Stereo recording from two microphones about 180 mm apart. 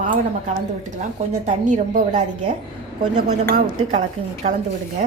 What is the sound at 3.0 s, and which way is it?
Speech, 25° right (ahead or behind).